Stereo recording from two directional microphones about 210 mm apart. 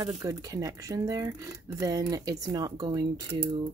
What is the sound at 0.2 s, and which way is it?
Speech, 15° right (ahead or behind).